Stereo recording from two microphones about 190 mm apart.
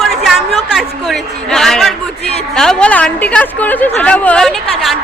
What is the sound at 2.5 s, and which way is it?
A woman's voice, 5° left (ahead or behind).